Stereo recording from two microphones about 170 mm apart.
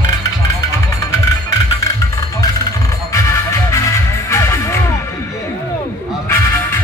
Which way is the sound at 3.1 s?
15° left (ahead or behind).